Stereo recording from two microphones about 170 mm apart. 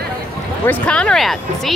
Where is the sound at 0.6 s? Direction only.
5° left (ahead or behind).